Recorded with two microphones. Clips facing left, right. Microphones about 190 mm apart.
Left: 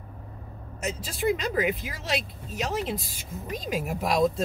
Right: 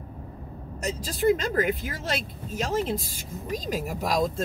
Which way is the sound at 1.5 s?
Centre (ahead or behind).